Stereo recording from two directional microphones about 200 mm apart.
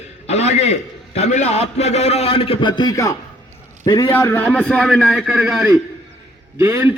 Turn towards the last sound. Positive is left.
turn(degrees=-10)  # may be behind; listen again after turning